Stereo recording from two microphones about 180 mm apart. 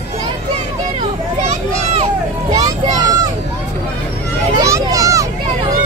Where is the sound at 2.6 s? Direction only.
20° right (ahead or behind).